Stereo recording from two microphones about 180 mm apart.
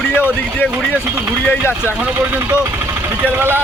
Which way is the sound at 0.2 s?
10° left (ahead or behind).